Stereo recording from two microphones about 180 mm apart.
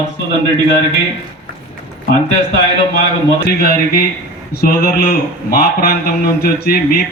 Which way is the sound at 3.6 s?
55° left (ahead or behind).